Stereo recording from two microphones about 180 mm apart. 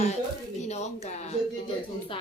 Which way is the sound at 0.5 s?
40° left (ahead or behind).